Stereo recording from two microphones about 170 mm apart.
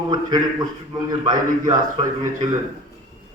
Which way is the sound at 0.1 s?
25° right (ahead or behind).